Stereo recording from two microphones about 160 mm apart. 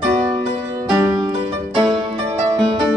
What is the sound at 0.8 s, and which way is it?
Music, 25° right (ahead or behind).